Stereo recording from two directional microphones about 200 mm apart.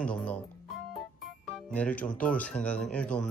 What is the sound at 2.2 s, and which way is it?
Speech, 5° left (ahead or behind).